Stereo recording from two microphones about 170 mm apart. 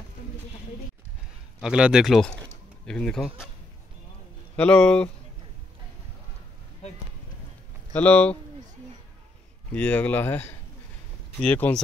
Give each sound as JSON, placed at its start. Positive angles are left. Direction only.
{"t": 1.6, "sound": "speech", "side_deg": -5}
{"t": 4.6, "sound": "speech", "side_deg": 5}
{"t": 7.9, "sound": "speech", "side_deg": 10}
{"t": 9.8, "sound": "speech", "side_deg": 10}